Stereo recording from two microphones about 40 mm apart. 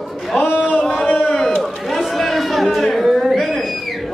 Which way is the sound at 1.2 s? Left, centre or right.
Centre.